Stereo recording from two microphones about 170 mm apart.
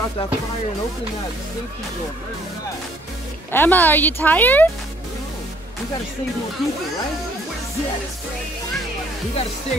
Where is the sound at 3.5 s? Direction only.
10° left (ahead or behind).